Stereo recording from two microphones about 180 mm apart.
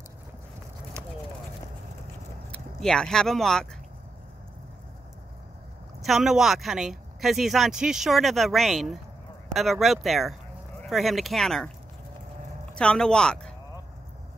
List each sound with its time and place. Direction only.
1.0 s clip-clop: 15° right (ahead or behind)
2.5 s speech: 5° left (ahead or behind)
6.0 s speech: centre (ahead or behind)
12.7 s speech: 5° left (ahead or behind)